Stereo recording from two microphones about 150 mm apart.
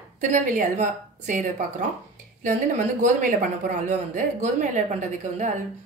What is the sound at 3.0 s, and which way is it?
A woman's voice, 60° right (ahead or behind).